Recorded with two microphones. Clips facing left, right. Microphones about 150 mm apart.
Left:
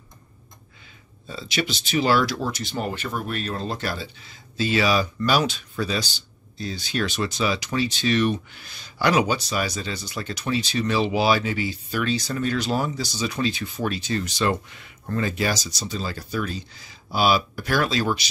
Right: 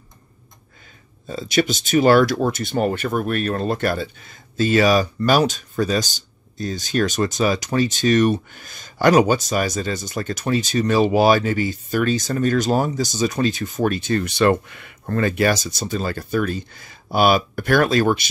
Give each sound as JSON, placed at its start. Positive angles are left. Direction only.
{"t": 1.2, "sound": "speech", "side_deg": -45}